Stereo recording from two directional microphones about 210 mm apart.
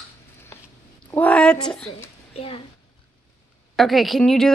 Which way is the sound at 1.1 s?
5° left (ahead or behind).